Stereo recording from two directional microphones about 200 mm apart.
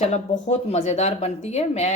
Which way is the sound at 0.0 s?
35° left (ahead or behind).